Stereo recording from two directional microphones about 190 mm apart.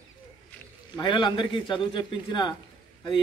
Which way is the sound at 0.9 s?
25° left (ahead or behind).